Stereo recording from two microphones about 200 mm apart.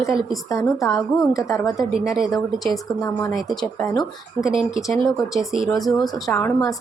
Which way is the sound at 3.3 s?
Centre (ahead or behind).